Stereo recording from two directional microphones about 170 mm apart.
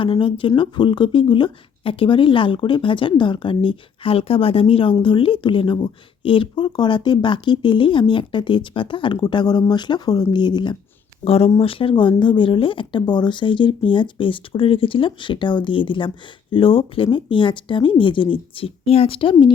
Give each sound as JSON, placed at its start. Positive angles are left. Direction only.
{"t": 0.0, "sound": "speech", "side_deg": 30}